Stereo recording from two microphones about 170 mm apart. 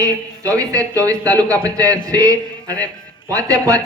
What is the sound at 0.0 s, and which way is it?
A man's voice, 20° right (ahead or behind).